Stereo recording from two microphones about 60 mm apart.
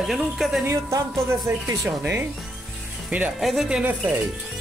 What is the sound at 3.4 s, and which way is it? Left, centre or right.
Speech, centre.